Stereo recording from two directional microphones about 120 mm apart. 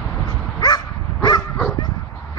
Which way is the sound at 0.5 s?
35° left (ahead or behind).